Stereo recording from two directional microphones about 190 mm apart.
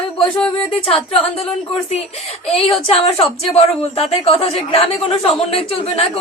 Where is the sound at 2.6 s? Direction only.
30° left (ahead or behind).